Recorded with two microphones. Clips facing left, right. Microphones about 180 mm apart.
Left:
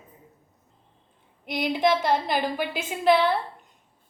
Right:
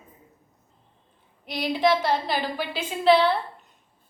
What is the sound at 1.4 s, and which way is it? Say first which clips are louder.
Speech: left 2 dB; 55° left (ahead or behind).